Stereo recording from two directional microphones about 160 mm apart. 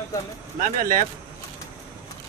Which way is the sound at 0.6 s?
60° right (ahead or behind).